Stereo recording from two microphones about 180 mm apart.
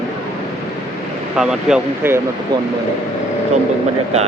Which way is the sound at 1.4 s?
5° right (ahead or behind).